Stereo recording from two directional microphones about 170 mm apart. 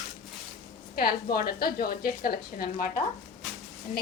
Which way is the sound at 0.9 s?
65° left (ahead or behind).